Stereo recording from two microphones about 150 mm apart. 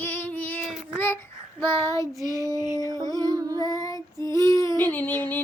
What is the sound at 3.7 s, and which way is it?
Child singing, 25° left (ahead or behind).